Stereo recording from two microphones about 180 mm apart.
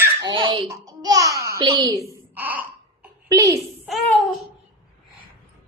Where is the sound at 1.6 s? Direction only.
25° right (ahead or behind).